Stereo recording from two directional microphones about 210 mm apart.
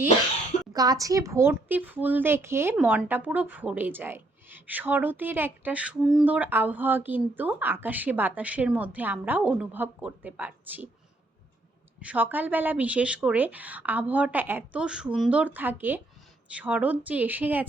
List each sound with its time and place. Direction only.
0.7 s speech: 20° right (ahead or behind)
11.9 s speech: 5° right (ahead or behind)